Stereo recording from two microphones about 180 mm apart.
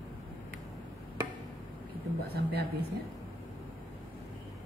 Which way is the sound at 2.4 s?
65° right (ahead or behind).